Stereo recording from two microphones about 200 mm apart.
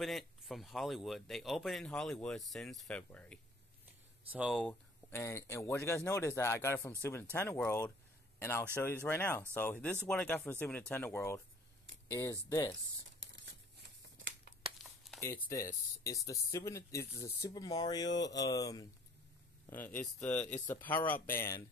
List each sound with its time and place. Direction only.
0.0 s speech: centre (ahead or behind)
5.1 s speech: 15° left (ahead or behind)
13.2 s crumpling: 65° right (ahead or behind)
15.1 s speech: 10° left (ahead or behind)